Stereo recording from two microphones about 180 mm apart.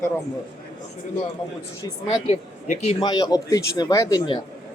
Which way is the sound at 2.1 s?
25° left (ahead or behind).